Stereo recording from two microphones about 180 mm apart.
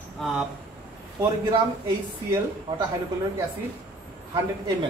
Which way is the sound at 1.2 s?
20° right (ahead or behind).